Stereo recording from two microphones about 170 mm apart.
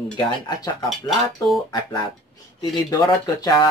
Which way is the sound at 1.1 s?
Centre (ahead or behind).